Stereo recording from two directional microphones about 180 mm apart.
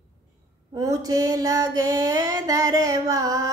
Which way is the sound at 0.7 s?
20° right (ahead or behind).